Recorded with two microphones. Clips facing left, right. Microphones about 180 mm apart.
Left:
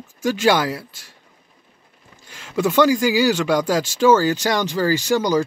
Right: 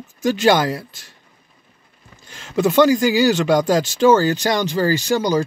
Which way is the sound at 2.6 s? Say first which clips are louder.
Right 2 dB; 20° right (ahead or behind).